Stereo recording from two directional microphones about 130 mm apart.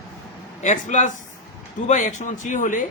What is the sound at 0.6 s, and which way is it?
Speech, 70° left (ahead or behind).